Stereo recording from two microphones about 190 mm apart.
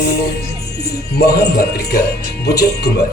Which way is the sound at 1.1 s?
55° left (ahead or behind).